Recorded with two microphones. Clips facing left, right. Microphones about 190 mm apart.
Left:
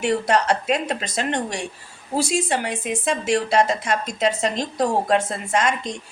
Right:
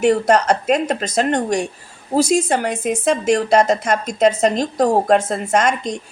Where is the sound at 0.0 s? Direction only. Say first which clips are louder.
Right 6 dB; 45° right (ahead or behind).